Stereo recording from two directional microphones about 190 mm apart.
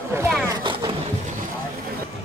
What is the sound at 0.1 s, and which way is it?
Speech, 15° right (ahead or behind).